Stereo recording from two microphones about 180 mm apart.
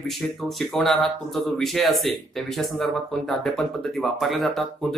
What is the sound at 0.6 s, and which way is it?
Speech, centre (ahead or behind).